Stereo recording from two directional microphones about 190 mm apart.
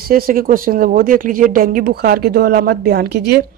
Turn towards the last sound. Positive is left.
turn(degrees=-55)  # may be behind; listen again after turning